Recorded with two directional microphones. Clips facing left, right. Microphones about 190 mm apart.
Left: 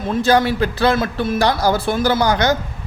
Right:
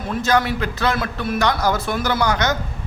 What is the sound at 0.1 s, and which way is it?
A man's voice, 30° left (ahead or behind).